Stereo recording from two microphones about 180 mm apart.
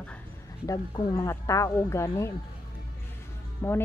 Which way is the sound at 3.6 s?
15° left (ahead or behind).